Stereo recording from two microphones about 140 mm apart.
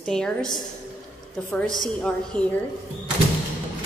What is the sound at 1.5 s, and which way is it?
A woman's voice, 5° left (ahead or behind).